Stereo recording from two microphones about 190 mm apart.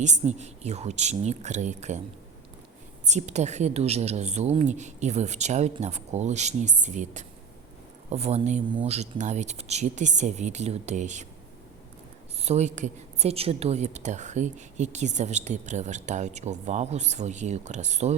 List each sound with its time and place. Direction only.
0.0 s a woman's voice: 40° right (ahead or behind)
3.1 s a woman's voice: 35° right (ahead or behind)
12.4 s a woman's voice: 35° right (ahead or behind)